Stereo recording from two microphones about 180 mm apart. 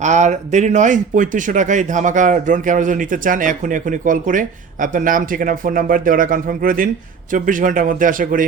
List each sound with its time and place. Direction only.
0.0 s speech: 40° right (ahead or behind)